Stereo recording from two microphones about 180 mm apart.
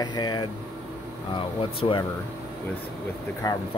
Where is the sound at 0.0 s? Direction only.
25° left (ahead or behind).